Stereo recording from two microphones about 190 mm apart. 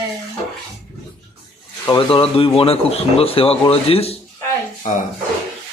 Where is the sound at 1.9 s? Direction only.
25° left (ahead or behind).